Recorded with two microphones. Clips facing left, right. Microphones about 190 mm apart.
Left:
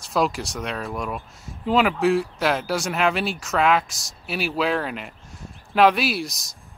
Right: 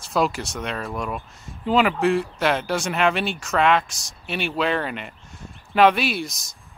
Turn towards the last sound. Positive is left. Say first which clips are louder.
# even
turn(degrees=0)  # may be behind; listen again after turning